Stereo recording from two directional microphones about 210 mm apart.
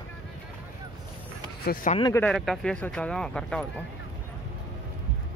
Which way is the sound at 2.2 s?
Centre (ahead or behind).